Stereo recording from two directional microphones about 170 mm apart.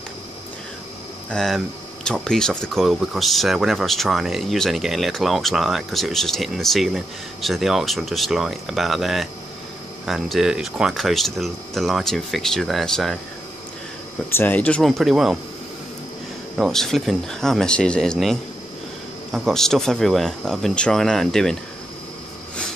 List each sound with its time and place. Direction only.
1.3 s speech: 5° left (ahead or behind)
14.3 s speech: 10° left (ahead or behind)
16.5 s speech: centre (ahead or behind)